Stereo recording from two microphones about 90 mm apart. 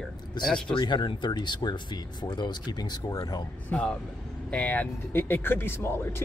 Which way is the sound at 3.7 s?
10° left (ahead or behind).